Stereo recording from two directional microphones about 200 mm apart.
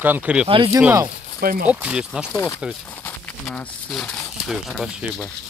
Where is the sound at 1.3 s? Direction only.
50° right (ahead or behind).